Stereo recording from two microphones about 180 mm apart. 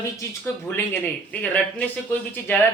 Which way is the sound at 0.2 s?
10° left (ahead or behind).